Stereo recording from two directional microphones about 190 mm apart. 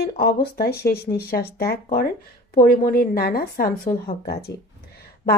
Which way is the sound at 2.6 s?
50° left (ahead or behind).